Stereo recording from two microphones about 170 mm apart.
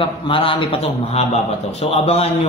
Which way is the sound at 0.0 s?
30° left (ahead or behind).